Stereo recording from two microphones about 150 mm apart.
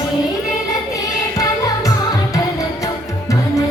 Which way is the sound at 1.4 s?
25° left (ahead or behind).